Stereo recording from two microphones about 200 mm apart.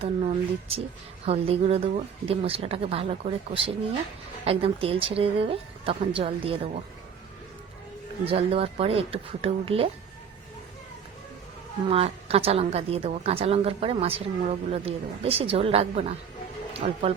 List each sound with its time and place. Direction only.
0.0 s a woman's voice: 30° right (ahead or behind)
8.2 s a woman's voice: 30° right (ahead or behind)
11.9 s a woman's voice: 30° right (ahead or behind)